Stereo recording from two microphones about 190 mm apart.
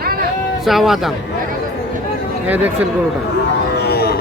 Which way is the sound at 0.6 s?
Centre (ahead or behind).